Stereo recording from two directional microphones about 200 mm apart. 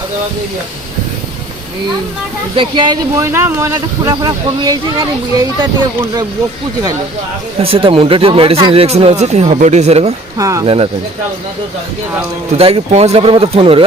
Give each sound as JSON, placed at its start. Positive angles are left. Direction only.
{"t": 2.6, "sound": "speech", "side_deg": -20}
{"t": 7.6, "sound": "speech", "side_deg": -25}
{"t": 10.3, "sound": "speech", "side_deg": -15}
{"t": 12.5, "sound": "speech", "side_deg": -30}